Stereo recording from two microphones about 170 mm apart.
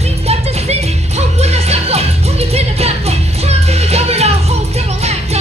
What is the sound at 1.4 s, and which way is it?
Music, 40° right (ahead or behind).